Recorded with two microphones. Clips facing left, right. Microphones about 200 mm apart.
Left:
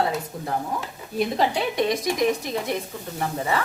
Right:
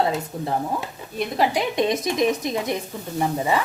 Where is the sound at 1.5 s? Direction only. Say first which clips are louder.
Right 2 dB; 15° right (ahead or behind).